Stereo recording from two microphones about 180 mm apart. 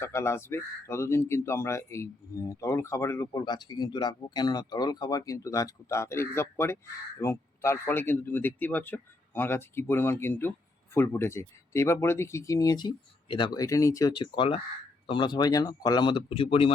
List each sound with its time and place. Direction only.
0.0 s speech: 15° left (ahead or behind); by 16.7 s 30° left (ahead or behind)